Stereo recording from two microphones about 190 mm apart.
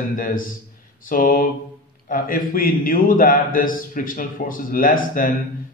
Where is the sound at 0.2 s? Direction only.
45° left (ahead or behind).